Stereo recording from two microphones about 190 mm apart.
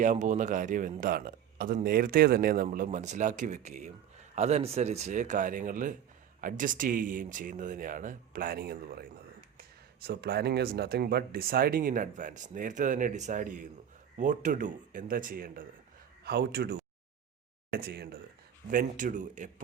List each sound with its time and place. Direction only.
0.0 s speech: 40° right (ahead or behind)